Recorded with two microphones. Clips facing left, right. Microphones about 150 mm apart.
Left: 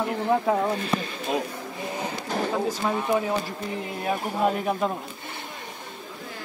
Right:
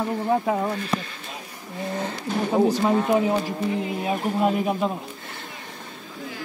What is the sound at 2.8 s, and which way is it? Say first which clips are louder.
Speech: right 4 dB; 25° right (ahead or behind).